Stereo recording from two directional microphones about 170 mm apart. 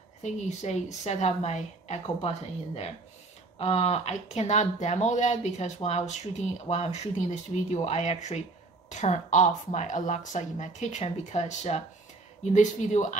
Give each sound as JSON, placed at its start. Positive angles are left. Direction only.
{"t": 0.2, "sound": "a woman's voice", "side_deg": 45}